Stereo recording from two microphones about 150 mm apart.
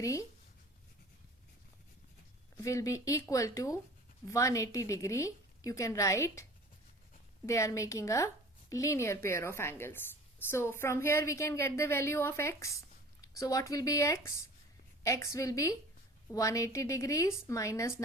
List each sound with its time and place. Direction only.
0.0 s a woman's voice: 20° left (ahead or behind)
2.6 s a woman's voice: 20° left (ahead or behind)